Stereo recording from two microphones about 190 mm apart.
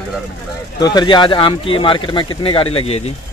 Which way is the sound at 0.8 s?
25° left (ahead or behind).